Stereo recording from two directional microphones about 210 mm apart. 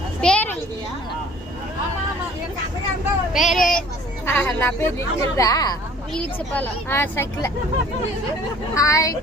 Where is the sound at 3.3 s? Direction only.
Centre (ahead or behind); by 5.7 s 15° left (ahead or behind).